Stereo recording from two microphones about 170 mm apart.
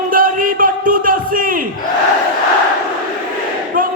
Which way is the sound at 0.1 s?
55° right (ahead or behind).